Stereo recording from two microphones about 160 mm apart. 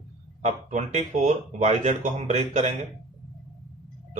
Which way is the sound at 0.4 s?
45° right (ahead or behind).